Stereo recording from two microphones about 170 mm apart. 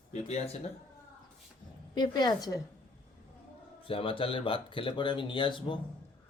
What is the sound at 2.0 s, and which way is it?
Speech, 25° left (ahead or behind).